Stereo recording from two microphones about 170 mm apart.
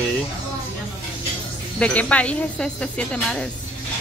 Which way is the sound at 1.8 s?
10° left (ahead or behind).